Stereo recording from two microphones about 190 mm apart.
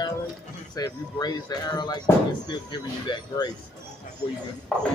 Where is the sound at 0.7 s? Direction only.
20° left (ahead or behind).